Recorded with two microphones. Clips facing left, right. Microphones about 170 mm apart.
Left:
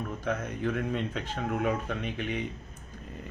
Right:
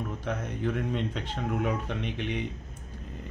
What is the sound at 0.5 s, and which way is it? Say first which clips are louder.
Speech: even; 50° left (ahead or behind).